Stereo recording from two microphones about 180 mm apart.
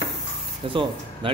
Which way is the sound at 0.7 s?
30° right (ahead or behind).